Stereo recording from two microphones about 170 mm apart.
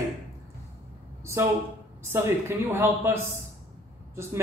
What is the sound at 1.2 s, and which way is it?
A woman's voice, 15° right (ahead or behind).